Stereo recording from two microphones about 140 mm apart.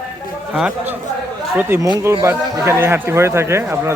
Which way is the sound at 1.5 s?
15° right (ahead or behind).